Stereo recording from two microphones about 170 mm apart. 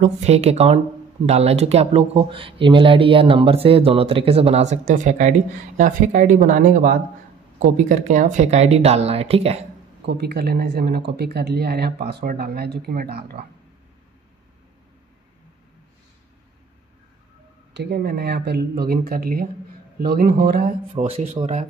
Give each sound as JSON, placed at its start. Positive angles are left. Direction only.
{"t": 0.0, "sound": "speech", "side_deg": -40}
{"t": 10.0, "sound": "speech", "side_deg": -70}
{"t": 17.7, "sound": "a man's voice", "side_deg": -70}
{"t": 20.9, "sound": "speech", "side_deg": -40}